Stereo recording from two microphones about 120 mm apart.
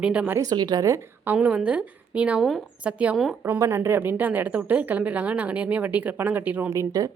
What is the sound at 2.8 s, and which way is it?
A woman's voice, 10° right (ahead or behind).